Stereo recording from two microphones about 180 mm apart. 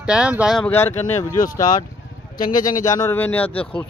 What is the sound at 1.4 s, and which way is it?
Speech, 50° left (ahead or behind).